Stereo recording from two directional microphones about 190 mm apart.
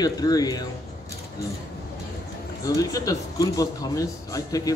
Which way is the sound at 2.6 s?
20° left (ahead or behind).